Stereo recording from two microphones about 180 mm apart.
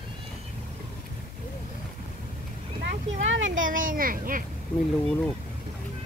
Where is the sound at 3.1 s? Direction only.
90° right.